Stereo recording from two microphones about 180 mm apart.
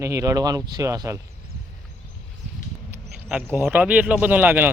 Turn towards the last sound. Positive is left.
turn(degrees=-10)  # may be behind; listen again after turning